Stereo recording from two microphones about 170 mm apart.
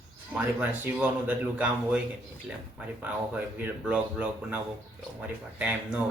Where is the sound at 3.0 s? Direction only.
10° right (ahead or behind).